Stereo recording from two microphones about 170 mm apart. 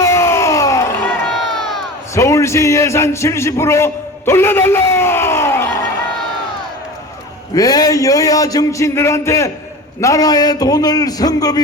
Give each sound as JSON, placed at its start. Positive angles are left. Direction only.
{"t": 0.0, "sound": "a sound", "side_deg": 15}
{"t": 2.1, "sound": "a man's voice", "side_deg": 15}
{"t": 7.5, "sound": "a man's voice", "side_deg": 20}